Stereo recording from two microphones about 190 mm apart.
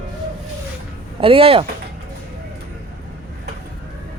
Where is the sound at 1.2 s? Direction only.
30° right (ahead or behind).